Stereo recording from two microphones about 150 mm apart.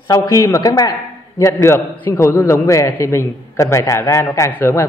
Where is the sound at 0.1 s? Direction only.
20° left (ahead or behind).